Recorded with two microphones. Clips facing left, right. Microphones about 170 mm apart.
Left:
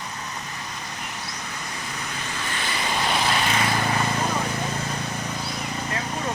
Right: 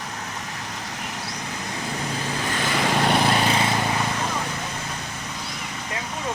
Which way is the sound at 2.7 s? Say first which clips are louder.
Right 5 dB; 60° right (ahead or behind).